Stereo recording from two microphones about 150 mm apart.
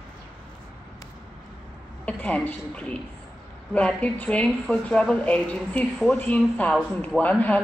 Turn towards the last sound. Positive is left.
turn(degrees=10)  # may be behind; listen again after turning